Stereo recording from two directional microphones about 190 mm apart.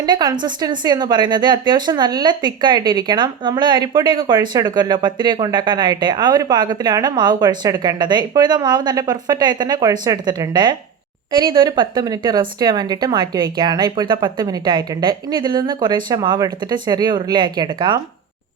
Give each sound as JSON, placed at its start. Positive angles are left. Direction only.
{"t": 0.0, "sound": "a woman's voice", "side_deg": -20}